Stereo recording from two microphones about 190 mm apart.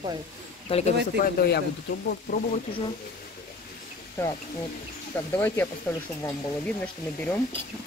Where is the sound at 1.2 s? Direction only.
60° left (ahead or behind).